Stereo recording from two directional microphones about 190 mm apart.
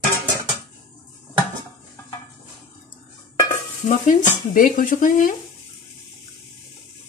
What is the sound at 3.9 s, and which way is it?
Speech, 45° left (ahead or behind).